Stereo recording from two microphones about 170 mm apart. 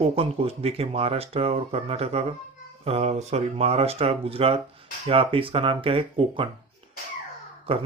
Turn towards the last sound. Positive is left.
turn(degrees=-35)  # may be behind; listen again after turning